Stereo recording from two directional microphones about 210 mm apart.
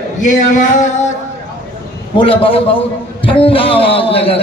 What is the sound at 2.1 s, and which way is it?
A man's voice, 25° left (ahead or behind).